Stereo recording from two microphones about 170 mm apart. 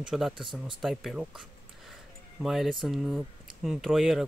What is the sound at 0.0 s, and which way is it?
Speech, centre (ahead or behind).